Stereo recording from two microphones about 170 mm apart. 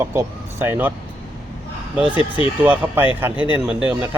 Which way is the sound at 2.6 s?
10° right (ahead or behind).